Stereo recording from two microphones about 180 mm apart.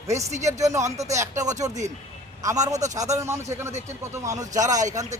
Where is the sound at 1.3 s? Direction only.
40° right (ahead or behind).